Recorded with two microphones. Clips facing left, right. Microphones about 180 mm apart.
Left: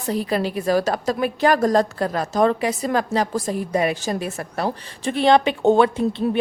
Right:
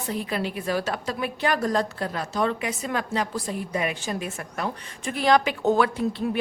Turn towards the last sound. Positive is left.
turn(degrees=25)  # may be behind; listen again after turning